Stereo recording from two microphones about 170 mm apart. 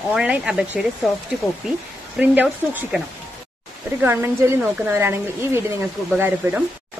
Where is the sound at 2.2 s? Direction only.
10° right (ahead or behind).